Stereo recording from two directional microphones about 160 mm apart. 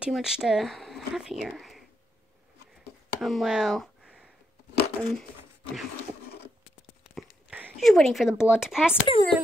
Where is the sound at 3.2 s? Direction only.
Centre (ahead or behind).